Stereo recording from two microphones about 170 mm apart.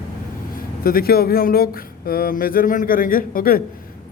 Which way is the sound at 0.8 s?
60° left (ahead or behind).